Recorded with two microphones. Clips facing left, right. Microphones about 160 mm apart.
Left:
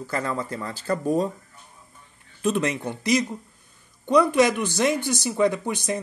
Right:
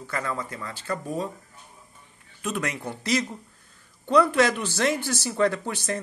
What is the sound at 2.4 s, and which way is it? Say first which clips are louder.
Speech: left 6 dB; 25° left (ahead or behind).